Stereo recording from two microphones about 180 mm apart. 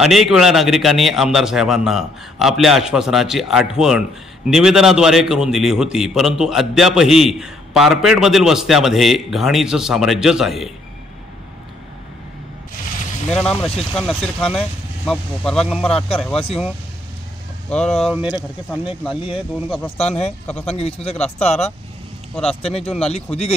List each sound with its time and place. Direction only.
0.0 s a man's voice: centre (ahead or behind)
13.3 s a man's voice: 5° left (ahead or behind)
17.6 s speech: 5° left (ahead or behind)
18.0 s speech: 10° right (ahead or behind)
20.0 s speech: 35° left (ahead or behind)
22.3 s speech: 5° left (ahead or behind)
22.6 s speech: 35° left (ahead or behind)